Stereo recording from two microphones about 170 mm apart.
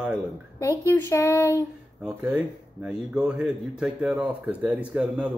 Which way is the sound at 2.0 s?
5° right (ahead or behind).